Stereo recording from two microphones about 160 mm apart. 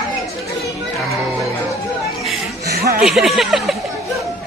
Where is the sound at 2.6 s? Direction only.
85° right.